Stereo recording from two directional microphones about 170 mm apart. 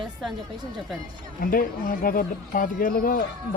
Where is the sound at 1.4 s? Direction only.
55° left (ahead or behind).